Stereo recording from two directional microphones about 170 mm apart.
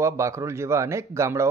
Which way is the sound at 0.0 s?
15° right (ahead or behind).